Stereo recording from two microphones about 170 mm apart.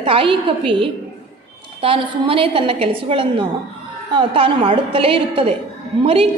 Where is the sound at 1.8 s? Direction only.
30° right (ahead or behind).